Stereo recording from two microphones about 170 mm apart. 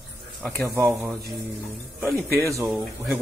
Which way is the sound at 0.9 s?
Centre (ahead or behind).